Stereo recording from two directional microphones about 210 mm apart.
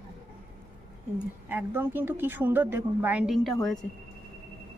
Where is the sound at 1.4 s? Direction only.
10° right (ahead or behind).